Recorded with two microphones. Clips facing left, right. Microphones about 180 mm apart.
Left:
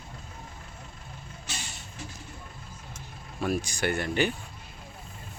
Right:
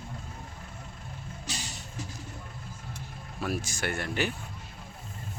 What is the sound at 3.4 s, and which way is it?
Speech, centre (ahead or behind).